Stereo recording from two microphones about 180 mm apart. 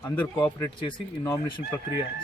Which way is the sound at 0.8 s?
25° left (ahead or behind).